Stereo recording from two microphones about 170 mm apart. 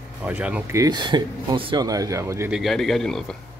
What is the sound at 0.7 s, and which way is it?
Speech, 25° right (ahead or behind).